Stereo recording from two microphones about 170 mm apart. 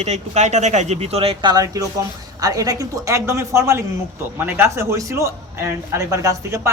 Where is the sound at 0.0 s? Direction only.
45° right (ahead or behind).